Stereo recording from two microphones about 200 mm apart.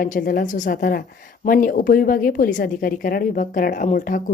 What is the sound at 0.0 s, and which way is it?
A woman's voice, 45° left (ahead or behind).